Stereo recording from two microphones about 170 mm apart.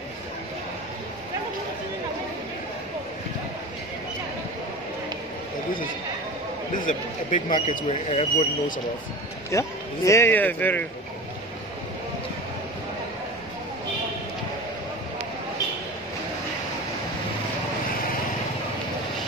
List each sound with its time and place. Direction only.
6.9 s speech: 45° left (ahead or behind)
9.5 s speech: 15° left (ahead or behind)